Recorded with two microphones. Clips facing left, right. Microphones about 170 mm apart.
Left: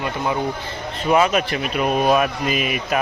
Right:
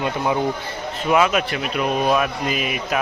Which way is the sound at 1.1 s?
Centre (ahead or behind).